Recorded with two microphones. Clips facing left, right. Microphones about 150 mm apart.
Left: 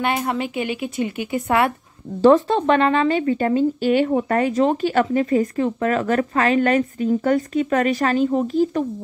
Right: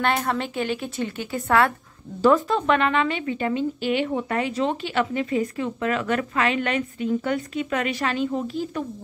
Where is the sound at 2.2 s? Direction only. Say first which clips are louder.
Left 5 dB; 35° left (ahead or behind).